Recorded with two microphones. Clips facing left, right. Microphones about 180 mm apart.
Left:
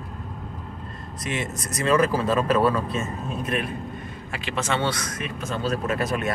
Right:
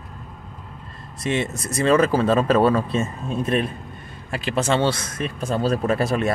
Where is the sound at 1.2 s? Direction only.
30° right (ahead or behind).